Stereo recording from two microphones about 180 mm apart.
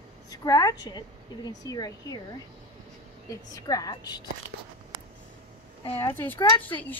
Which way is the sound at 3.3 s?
20° left (ahead or behind).